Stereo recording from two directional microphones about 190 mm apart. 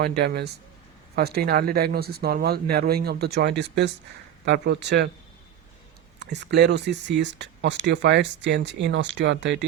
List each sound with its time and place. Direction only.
0.2 s speech: 60° right (ahead or behind)
6.1 s speech: 65° right (ahead or behind)